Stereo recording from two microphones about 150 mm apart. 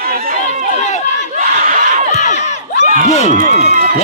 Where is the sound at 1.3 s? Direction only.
70° right (ahead or behind).